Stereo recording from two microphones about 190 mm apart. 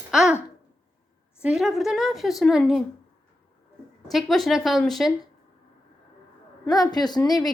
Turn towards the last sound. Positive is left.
turn(degrees=20)  # may be behind; listen again after turning